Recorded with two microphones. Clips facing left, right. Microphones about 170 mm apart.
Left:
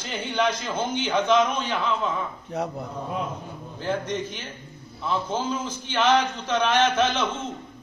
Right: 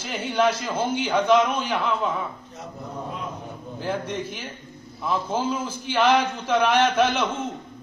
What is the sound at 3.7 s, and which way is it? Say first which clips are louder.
A man's voice: left 1 dB; 10° right (ahead or behind).